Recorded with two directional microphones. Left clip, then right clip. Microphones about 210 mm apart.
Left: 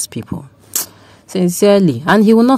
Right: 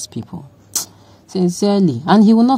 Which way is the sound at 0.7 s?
15° left (ahead or behind).